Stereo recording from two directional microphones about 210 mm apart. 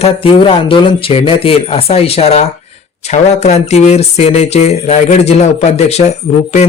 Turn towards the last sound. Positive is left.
turn(degrees=30)  # may be behind; listen again after turning